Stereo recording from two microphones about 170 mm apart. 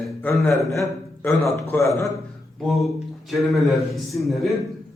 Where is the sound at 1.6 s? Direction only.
15° left (ahead or behind).